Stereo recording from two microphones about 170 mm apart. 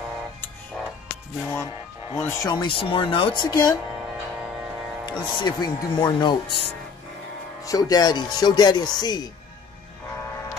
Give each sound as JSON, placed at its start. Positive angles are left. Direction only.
{"t": 1.4, "sound": "speech", "side_deg": 15}
{"t": 5.0, "sound": "speech", "side_deg": 25}
{"t": 7.6, "sound": "speech", "side_deg": 20}